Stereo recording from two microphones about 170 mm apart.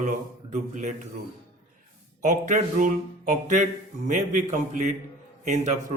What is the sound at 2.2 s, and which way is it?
Speech, 45° right (ahead or behind).